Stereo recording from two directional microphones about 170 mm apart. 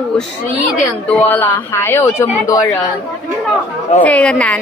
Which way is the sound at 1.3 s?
15° left (ahead or behind).